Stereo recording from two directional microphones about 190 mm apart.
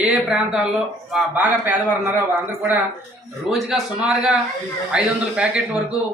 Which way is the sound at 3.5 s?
Centre (ahead or behind).